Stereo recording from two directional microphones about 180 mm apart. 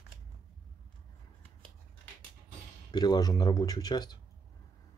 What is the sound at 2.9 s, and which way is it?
Speech, 20° left (ahead or behind).